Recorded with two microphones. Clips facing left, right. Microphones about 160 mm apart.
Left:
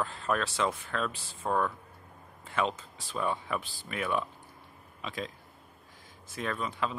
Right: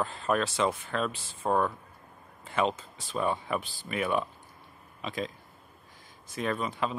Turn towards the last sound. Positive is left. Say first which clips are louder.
# right 2 dB
turn(degrees=-5)  # may be behind; listen again after turning